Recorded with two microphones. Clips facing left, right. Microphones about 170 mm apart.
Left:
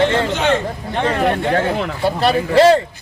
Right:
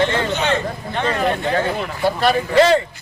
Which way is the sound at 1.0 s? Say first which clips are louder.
Left 3 dB; 60° left (ahead or behind).